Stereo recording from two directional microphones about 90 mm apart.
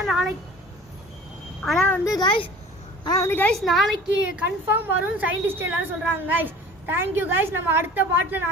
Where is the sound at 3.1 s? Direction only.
25° left (ahead or behind).